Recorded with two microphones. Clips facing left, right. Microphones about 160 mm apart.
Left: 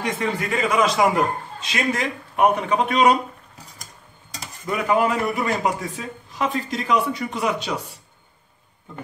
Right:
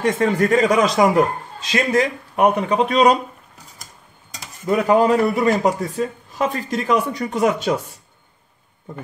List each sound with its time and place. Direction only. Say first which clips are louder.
0.0 s a man's voice: right 7 dB; 45° right (ahead or behind)
4.6 s speech: right 5 dB; 35° right (ahead or behind)